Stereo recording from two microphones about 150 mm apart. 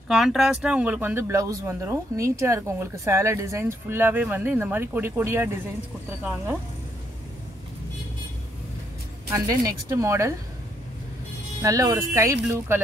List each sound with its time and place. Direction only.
0.1 s speech: centre (ahead or behind)
9.3 s speech: 20° right (ahead or behind)
11.6 s speech: 20° right (ahead or behind)